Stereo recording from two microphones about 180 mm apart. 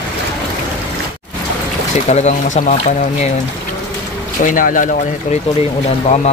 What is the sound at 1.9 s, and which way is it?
Speech, 40° left (ahead or behind).